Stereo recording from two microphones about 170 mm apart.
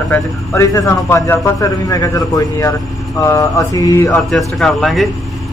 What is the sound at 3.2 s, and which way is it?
Mantra, 20° left (ahead or behind).